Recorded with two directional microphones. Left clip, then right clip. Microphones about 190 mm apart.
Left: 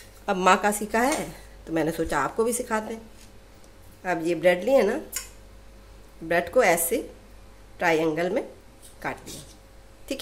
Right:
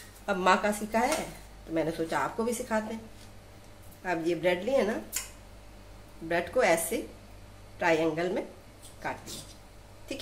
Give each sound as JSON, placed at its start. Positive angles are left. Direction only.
{"t": 0.3, "sound": "a woman's voice", "side_deg": 30}
{"t": 4.0, "sound": "a woman's voice", "side_deg": 40}
{"t": 6.2, "sound": "a woman's voice", "side_deg": 35}